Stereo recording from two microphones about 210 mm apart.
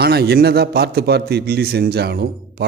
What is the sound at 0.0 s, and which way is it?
A man's voice, 50° right (ahead or behind).